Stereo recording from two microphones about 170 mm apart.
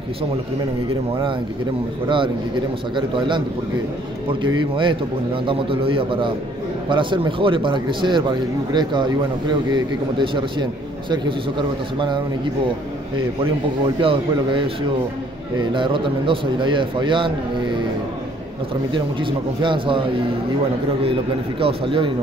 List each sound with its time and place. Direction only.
2.0 s a man's voice: 30° right (ahead or behind)
4.3 s a man's voice: 30° right (ahead or behind)
13.4 s a man's voice: 30° right (ahead or behind)
19.6 s a man's voice: 30° right (ahead or behind)